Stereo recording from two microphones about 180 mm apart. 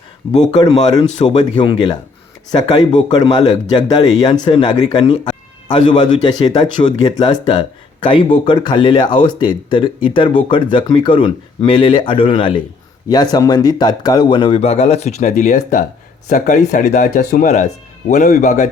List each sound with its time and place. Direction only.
0.6 s speech: 25° left (ahead or behind); by 18.7 s 45° left (ahead or behind)